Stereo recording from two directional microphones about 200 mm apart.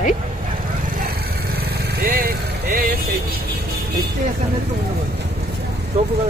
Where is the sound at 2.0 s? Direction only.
50° right (ahead or behind).